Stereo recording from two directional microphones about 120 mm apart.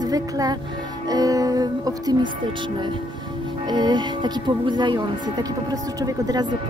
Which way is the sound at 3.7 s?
35° right (ahead or behind).